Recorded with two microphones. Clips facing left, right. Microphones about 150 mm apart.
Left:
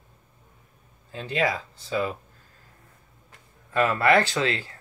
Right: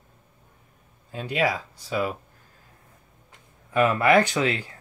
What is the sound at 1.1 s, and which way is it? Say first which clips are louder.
Speech: right 1 dB; 10° right (ahead or behind).